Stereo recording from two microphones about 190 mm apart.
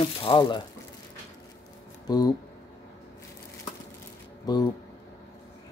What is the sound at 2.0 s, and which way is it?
Speech, 20° left (ahead or behind).